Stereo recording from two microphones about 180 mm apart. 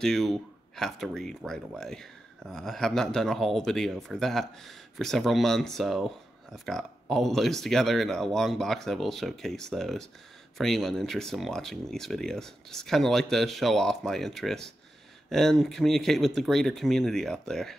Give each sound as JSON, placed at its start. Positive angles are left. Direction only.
{"t": 0.0, "sound": "speech", "side_deg": 0}